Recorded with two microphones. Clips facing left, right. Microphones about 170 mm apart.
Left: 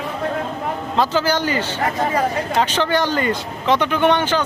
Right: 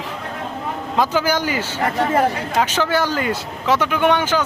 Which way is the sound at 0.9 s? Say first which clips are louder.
Even; 10° right (ahead or behind).